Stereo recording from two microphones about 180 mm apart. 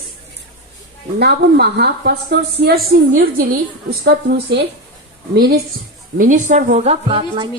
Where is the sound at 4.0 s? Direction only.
65° right (ahead or behind).